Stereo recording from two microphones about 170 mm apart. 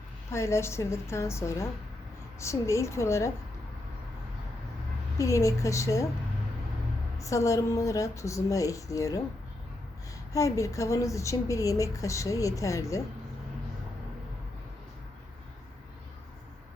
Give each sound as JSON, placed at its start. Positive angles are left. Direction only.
{"t": 0.3, "sound": "a woman's voice", "side_deg": 15}
{"t": 5.1, "sound": "a woman's voice", "side_deg": 20}
{"t": 7.2, "sound": "a woman's voice", "side_deg": 20}
{"t": 10.3, "sound": "a woman's voice", "side_deg": 20}